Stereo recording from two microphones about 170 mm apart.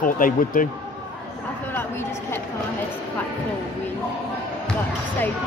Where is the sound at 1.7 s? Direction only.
15° left (ahead or behind).